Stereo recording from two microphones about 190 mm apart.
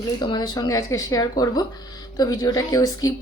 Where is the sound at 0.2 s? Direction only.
20° left (ahead or behind).